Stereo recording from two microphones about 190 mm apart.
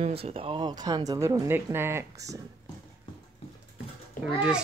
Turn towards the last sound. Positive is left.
turn(degrees=-5)  # may be behind; listen again after turning